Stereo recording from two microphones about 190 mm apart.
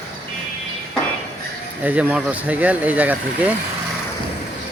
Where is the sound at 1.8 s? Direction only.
5° right (ahead or behind).